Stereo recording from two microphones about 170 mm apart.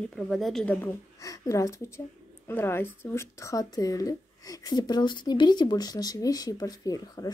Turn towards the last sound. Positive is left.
turn(degrees=20)  # may be behind; listen again after turning